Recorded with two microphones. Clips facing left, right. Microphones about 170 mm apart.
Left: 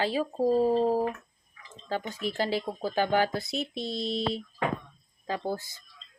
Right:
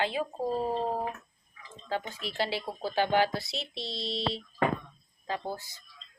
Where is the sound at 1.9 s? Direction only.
45° left (ahead or behind).